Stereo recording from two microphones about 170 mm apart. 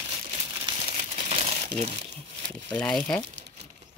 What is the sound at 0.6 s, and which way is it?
Crumpling, 35° right (ahead or behind).